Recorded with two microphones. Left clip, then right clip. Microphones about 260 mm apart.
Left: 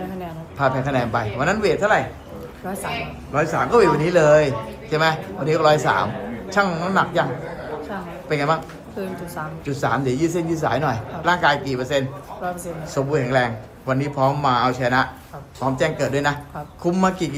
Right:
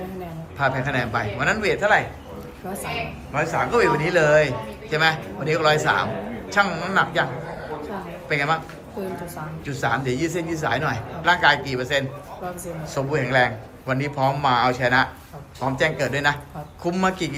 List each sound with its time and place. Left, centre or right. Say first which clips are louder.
0.6 s a man's voice: left 2 dB; centre
3.3 s a man's voice: left 4 dB; centre
8.3 s a man's voice: left 1 dB; centre
9.0 s a woman's voice: left 1 dB; centre
9.6 s a man's voice: left 2 dB; centre